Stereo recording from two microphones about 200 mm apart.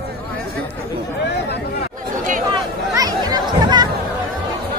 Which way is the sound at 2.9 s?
20° right (ahead or behind).